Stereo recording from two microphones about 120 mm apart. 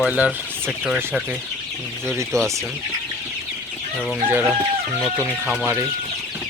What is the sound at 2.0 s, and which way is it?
Speech, 20° right (ahead or behind).